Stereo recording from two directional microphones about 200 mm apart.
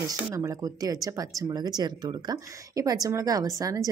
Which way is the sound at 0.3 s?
15° right (ahead or behind).